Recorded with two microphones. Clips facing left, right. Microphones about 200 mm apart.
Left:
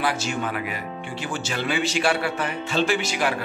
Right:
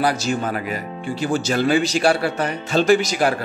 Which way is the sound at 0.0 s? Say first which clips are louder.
Right 5 dB; 40° right (ahead or behind).